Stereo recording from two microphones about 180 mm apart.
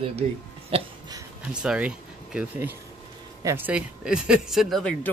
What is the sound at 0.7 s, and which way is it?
Hiccup, 20° right (ahead or behind).